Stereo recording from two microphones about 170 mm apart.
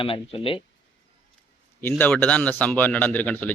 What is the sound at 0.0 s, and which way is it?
Speech, 35° left (ahead or behind).